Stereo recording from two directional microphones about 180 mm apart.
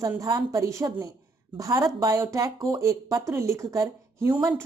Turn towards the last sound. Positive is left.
turn(degrees=-20)  # may be behind; listen again after turning